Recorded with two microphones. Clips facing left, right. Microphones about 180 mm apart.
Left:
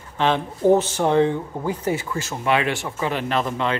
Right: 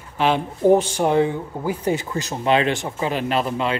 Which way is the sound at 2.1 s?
20° right (ahead or behind).